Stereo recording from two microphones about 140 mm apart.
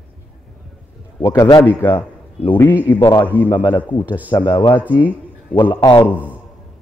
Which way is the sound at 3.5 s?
35° left (ahead or behind).